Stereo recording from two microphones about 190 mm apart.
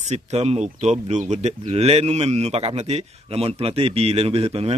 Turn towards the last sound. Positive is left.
turn(degrees=-30)  # may be behind; listen again after turning